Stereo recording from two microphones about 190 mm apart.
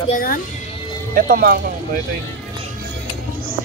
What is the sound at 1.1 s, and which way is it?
Speech, 45° right (ahead or behind).